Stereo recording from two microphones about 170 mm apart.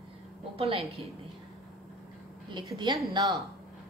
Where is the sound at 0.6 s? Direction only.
35° right (ahead or behind).